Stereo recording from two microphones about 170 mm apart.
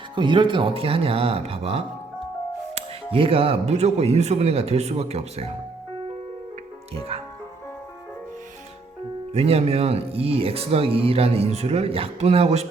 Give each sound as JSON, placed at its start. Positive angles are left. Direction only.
{"t": 0.2, "sound": "speech", "side_deg": -30}
{"t": 9.3, "sound": "speech", "side_deg": -35}